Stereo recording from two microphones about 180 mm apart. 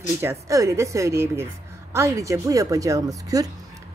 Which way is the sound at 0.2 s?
15° right (ahead or behind).